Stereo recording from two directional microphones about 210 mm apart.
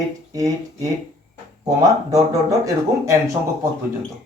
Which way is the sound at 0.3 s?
15° right (ahead or behind).